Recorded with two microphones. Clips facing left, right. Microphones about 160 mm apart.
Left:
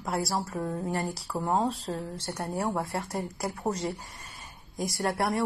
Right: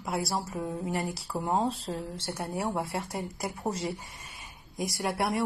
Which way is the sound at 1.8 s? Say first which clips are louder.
Left 1 dB; 30° right (ahead or behind).